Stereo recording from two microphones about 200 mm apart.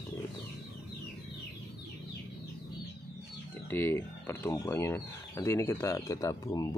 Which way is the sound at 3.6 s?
10° left (ahead or behind).